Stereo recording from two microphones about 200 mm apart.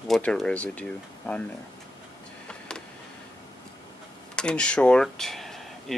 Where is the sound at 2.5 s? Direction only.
5° left (ahead or behind).